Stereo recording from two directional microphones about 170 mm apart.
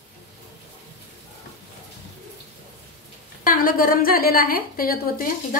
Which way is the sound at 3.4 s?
55° left (ahead or behind).